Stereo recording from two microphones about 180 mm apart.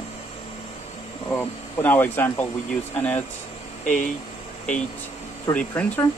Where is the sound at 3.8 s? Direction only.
50° left (ahead or behind).